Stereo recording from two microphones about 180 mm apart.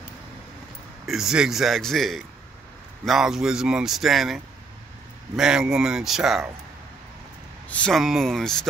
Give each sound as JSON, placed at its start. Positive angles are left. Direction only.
{"t": 1.0, "sound": "speech", "side_deg": 0}
{"t": 7.7, "sound": "speech", "side_deg": 5}